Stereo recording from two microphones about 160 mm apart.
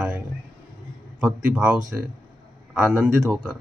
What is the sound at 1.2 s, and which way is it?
Speech, 5° right (ahead or behind).